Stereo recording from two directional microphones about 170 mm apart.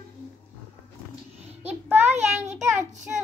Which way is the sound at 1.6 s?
10° right (ahead or behind).